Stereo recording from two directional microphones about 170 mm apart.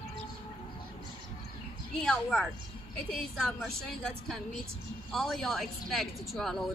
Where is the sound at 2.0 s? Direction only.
5° left (ahead or behind).